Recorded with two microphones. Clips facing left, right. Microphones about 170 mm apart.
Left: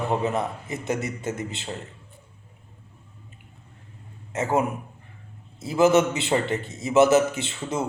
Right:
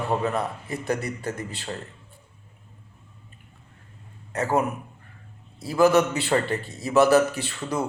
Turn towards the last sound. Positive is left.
turn(degrees=25)  # may be behind; listen again after turning